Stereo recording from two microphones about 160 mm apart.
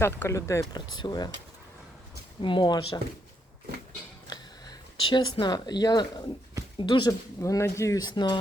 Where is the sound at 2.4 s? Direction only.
30° left (ahead or behind).